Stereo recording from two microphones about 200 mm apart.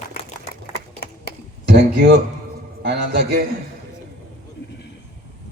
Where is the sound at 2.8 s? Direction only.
55° right (ahead or behind).